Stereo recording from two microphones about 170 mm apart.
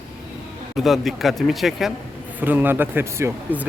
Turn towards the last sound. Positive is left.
turn(degrees=-15)  # may be behind; listen again after turning